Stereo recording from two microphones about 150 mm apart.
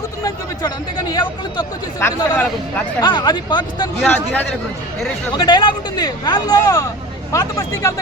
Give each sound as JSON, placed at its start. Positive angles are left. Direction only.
{"t": 0.2, "sound": "speech", "side_deg": 25}
{"t": 2.0, "sound": "speech", "side_deg": 15}
{"t": 3.0, "sound": "speech", "side_deg": 30}
{"t": 4.0, "sound": "speech", "side_deg": 10}
{"t": 5.4, "sound": "speech", "side_deg": 30}